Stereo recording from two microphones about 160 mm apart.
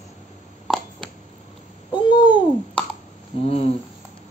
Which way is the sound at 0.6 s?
5° left (ahead or behind).